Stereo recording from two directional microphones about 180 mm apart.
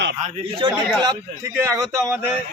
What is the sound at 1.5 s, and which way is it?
Speech, 15° right (ahead or behind).